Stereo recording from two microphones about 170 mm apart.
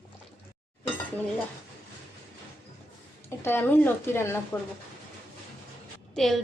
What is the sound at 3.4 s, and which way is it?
Speech, 10° left (ahead or behind).